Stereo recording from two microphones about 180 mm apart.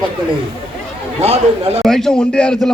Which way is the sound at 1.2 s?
35° right (ahead or behind).